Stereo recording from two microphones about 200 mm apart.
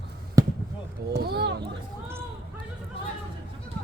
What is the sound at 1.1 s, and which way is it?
Speech, 55° right (ahead or behind).